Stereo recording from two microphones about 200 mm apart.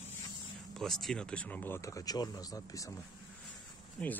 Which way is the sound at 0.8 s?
Centre (ahead or behind).